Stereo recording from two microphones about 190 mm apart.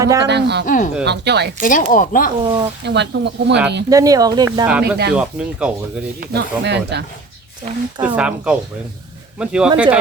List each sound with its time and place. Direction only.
0.0 s speech: 20° right (ahead or behind)
0.3 s speech: 65° right (ahead or behind)
0.6 s speech: 45° left (ahead or behind)
1.0 s speech: 60° right (ahead or behind)
1.6 s speech: 45° left (ahead or behind)
2.4 s speech: 25° right (ahead or behind)
2.8 s speech: 65° right (ahead or behind)
3.8 s speech: 20° right (ahead or behind)
4.6 s speech: 10° right (ahead or behind)
6.1 s speech: 60° right (ahead or behind)
8.0 s speech: 5° right (ahead or behind)